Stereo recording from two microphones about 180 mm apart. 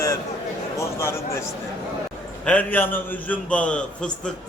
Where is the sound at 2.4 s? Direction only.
10° left (ahead or behind).